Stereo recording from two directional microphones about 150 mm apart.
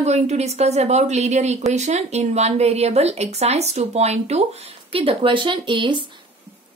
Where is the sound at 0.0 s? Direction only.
45° right (ahead or behind).